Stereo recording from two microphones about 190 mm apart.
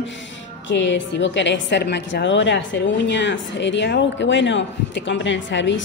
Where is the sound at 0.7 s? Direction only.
70° left (ahead or behind).